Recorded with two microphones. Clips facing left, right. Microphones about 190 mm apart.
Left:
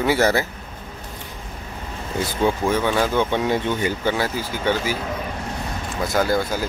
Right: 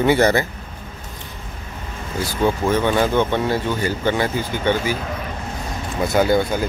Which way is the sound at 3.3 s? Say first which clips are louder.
Right 1 dB; 15° left (ahead or behind).